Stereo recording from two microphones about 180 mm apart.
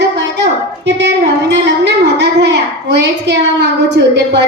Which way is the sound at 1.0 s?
75° right (ahead or behind).